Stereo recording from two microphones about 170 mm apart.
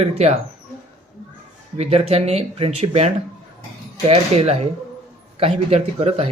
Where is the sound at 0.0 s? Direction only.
40° right (ahead or behind).